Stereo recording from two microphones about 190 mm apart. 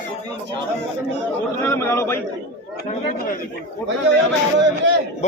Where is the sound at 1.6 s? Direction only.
15° left (ahead or behind).